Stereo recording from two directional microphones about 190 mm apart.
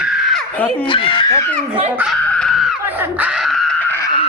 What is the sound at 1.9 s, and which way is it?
Screaming, centre (ahead or behind).